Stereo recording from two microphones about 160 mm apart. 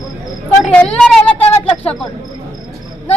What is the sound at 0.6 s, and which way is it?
Speech, centre (ahead or behind).